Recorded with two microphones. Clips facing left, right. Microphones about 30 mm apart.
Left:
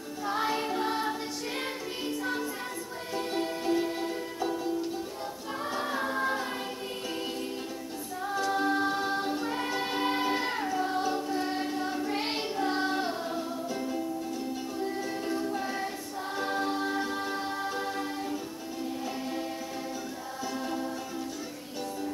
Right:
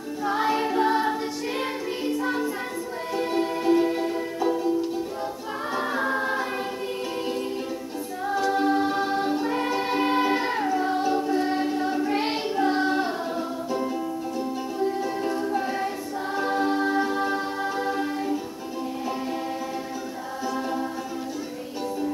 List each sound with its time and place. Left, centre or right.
0.2 s music: centre
5.8 s a capella: centre
8.3 s music: centre
12.1 s child singing: centre
14.8 s music: centre